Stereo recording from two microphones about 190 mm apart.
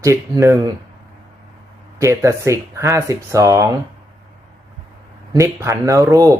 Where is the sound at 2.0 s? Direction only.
15° right (ahead or behind).